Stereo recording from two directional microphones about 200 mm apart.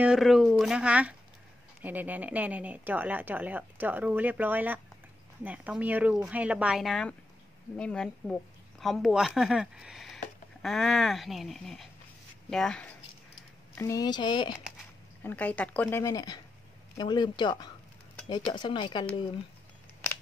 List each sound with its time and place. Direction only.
0.0 s a woman's voice: centre (ahead or behind)
13.7 s speech: 15° left (ahead or behind)
15.2 s a woman's voice: 5° left (ahead or behind); by 19.0 s 25° left (ahead or behind)